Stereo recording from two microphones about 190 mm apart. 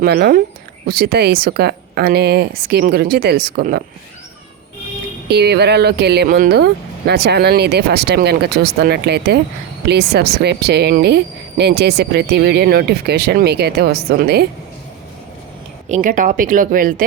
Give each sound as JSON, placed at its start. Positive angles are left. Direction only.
{"t": 0.0, "sound": "speech", "side_deg": -55}
{"t": 5.3, "sound": "speech", "side_deg": -60}
{"t": 15.9, "sound": "speech", "side_deg": -45}